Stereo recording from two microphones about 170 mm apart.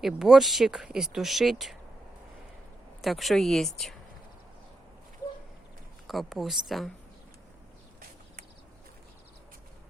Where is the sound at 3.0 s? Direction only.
Centre (ahead or behind).